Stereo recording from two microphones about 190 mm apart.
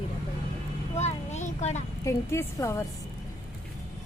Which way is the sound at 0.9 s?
35° left (ahead or behind).